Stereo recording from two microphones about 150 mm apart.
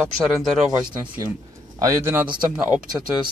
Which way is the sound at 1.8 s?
15° right (ahead or behind).